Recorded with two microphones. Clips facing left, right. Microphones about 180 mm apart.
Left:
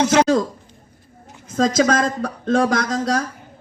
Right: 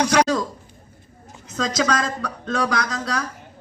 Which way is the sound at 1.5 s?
50° left (ahead or behind).